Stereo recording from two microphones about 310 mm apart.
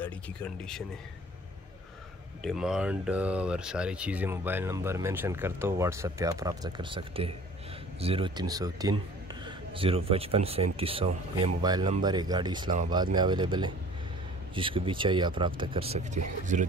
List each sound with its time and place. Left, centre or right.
0.0 s speech: centre
2.4 s a man's voice: centre; by 16.6 s right